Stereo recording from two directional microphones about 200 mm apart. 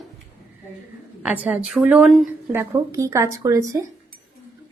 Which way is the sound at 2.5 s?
15° right (ahead or behind).